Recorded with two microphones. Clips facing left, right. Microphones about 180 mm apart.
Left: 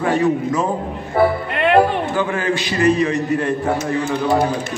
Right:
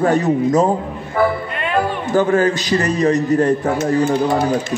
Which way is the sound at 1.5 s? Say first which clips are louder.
Left 6 dB; 70° left (ahead or behind).